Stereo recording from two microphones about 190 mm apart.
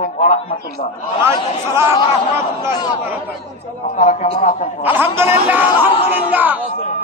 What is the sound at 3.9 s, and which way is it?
Speech, 40° left (ahead or behind).